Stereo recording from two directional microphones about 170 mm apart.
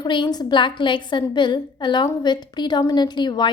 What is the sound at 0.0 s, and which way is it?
A woman's voice, 25° left (ahead or behind).